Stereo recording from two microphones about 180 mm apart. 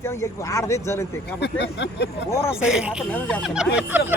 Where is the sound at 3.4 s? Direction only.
5° right (ahead or behind).